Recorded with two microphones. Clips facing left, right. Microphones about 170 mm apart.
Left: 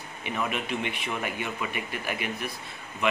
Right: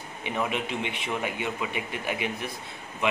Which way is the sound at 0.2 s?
20° right (ahead or behind).